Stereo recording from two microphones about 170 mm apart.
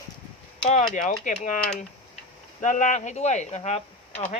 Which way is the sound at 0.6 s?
45° left (ahead or behind).